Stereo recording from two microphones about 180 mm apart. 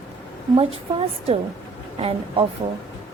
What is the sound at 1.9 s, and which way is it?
Speech, 30° right (ahead or behind).